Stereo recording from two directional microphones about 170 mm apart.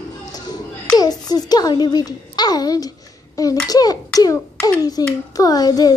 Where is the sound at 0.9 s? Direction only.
25° left (ahead or behind).